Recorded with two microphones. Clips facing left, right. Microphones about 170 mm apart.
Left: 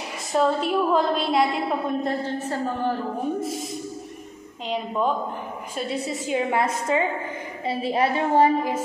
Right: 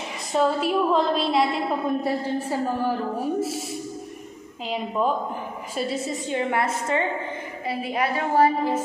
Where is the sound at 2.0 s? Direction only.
10° right (ahead or behind).